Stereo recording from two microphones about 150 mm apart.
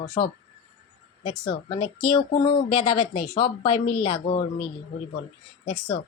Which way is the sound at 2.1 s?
35° left (ahead or behind).